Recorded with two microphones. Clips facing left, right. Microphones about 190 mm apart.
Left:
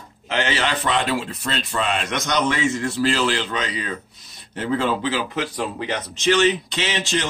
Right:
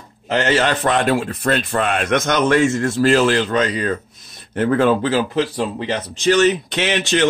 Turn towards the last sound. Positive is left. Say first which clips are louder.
# right 5 dB
turn(degrees=-65)  # may be behind; listen again after turning